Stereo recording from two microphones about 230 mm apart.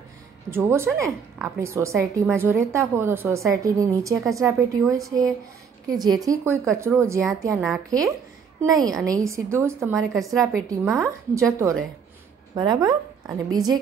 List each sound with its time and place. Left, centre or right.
0.5 s a woman's voice: centre
7.5 s a woman's voice: centre
8.6 s a woman's voice: centre
9.9 s a woman's voice: centre
10.7 s a woman's voice: centre